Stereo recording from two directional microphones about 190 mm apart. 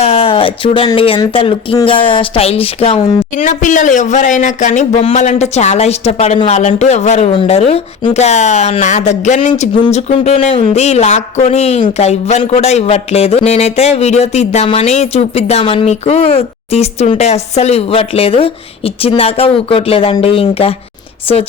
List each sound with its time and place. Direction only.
0.0 s speech: 30° left (ahead or behind)
3.3 s speech: 40° left (ahead or behind)